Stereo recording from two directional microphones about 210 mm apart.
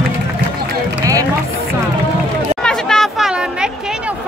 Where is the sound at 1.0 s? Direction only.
15° right (ahead or behind).